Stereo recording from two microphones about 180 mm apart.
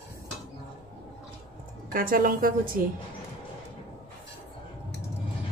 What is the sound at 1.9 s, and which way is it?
Speech, 50° right (ahead or behind).